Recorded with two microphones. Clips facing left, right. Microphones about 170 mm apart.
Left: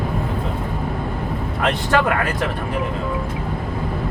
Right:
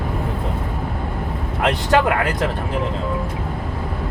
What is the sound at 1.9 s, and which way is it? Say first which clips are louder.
Speech: right 2 dB; 20° right (ahead or behind).